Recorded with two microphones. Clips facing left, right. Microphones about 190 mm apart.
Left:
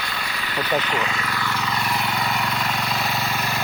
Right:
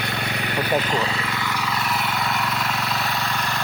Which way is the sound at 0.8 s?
35° right (ahead or behind).